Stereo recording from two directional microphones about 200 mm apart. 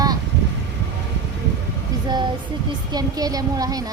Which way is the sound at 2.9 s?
20° right (ahead or behind).